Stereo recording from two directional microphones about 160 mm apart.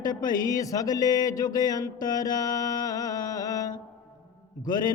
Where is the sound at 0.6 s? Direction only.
20° left (ahead or behind).